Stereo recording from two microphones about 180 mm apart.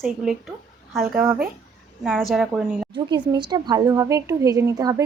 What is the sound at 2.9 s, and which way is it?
Speech, 25° right (ahead or behind).